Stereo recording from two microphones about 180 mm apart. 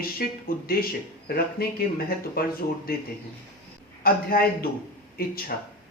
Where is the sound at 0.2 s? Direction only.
55° left (ahead or behind).